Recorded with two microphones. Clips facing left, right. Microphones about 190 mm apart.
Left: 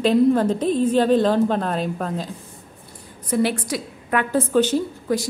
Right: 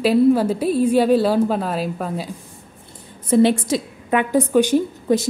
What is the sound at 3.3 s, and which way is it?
Speech, 25° right (ahead or behind).